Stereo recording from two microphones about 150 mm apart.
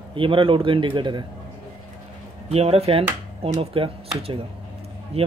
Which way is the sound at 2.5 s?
45° right (ahead or behind).